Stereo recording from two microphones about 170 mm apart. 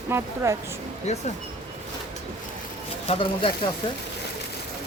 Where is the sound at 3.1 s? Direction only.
30° left (ahead or behind).